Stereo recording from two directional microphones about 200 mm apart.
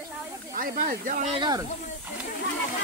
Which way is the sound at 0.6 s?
45° right (ahead or behind).